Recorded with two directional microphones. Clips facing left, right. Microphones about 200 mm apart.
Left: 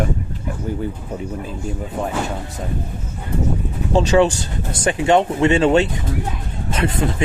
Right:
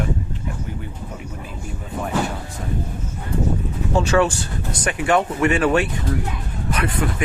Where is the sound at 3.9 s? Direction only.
20° left (ahead or behind).